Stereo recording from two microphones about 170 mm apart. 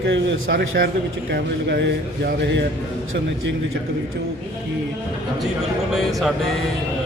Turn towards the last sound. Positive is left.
turn(degrees=0)  # may be behind; listen again after turning